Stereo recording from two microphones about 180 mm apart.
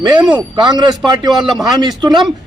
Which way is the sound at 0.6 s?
25° right (ahead or behind).